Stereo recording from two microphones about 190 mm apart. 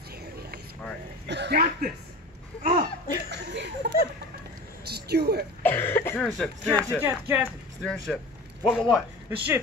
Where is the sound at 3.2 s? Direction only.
65° right (ahead or behind).